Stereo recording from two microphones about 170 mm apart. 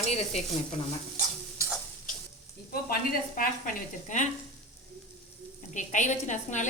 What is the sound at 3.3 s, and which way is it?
Speech, 55° left (ahead or behind).